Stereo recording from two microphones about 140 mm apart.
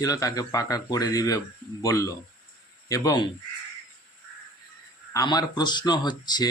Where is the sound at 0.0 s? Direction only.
25° left (ahead or behind).